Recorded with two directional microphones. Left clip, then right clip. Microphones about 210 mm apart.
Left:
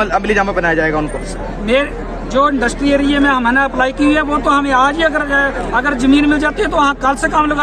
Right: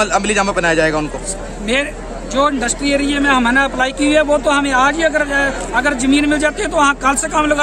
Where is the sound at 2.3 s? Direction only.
10° right (ahead or behind).